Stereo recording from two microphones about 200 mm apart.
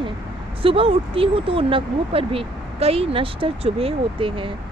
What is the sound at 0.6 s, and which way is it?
Speech, 25° right (ahead or behind).